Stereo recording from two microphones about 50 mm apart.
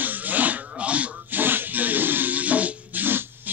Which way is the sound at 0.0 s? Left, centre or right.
Right.